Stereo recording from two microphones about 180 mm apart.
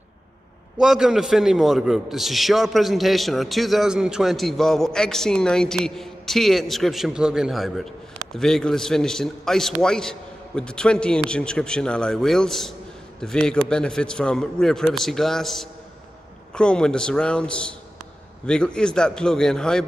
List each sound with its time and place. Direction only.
0.7 s a man's voice: 5° right (ahead or behind)